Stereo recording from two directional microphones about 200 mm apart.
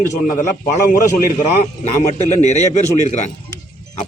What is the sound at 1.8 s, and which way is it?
A man's voice, 35° left (ahead or behind).